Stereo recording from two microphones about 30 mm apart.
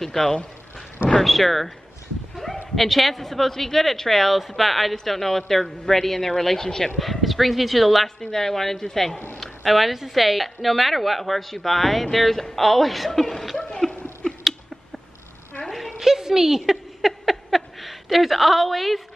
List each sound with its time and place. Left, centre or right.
0.0 s speech: centre
1.2 s a woman's voice: centre
2.3 s bow-wow: centre
2.7 s speech: centre
7.0 s a woman's voice: centre
8.2 s speech: centre
9.7 s a woman's voice: centre
13.7 s laughter: centre
15.7 s a sound: centre
16.0 s a sound: centre
17.2 s a sound: centre